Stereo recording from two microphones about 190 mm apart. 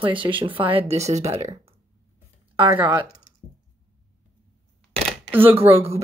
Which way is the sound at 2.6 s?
10° right (ahead or behind).